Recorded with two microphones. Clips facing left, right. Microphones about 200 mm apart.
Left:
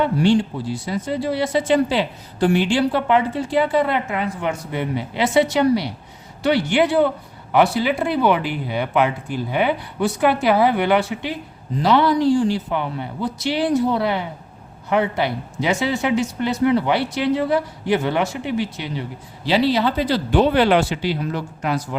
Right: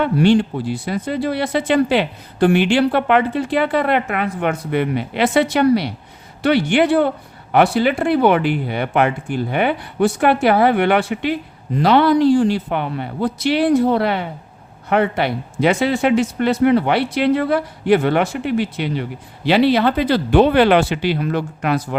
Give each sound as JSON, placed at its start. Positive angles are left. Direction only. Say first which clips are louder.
{"t": 0.0, "sound": "speech", "louder": "right 3 dB", "side_deg": -60}